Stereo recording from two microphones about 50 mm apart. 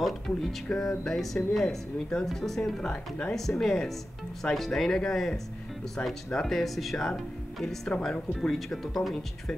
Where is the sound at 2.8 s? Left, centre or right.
Centre.